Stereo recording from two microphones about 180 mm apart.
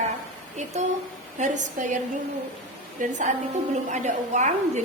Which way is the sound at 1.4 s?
45° right (ahead or behind).